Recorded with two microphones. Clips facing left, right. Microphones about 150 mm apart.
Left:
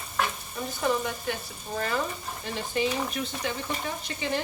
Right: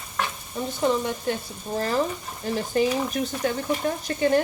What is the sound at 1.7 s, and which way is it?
Speech, 35° right (ahead or behind).